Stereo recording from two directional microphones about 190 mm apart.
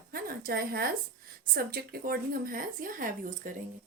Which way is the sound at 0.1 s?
50° right (ahead or behind).